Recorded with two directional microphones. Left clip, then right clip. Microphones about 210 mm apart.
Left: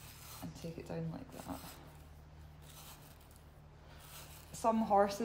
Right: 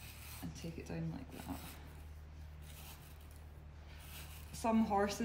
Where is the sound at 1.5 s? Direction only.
15° left (ahead or behind).